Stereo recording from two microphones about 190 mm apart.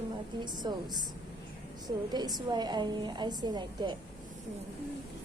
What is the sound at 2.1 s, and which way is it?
A woman's voice, 20° right (ahead or behind).